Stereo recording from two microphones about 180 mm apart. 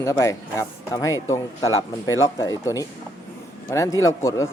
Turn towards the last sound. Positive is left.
turn(degrees=15)  # may be behind; listen again after turning